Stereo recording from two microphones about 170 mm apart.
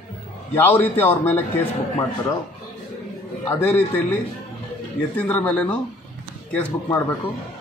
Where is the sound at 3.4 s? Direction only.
10° left (ahead or behind).